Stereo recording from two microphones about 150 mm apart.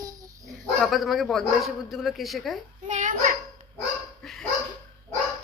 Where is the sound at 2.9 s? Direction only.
55° right (ahead or behind).